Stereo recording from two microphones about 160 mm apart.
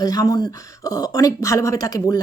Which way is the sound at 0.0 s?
25° left (ahead or behind).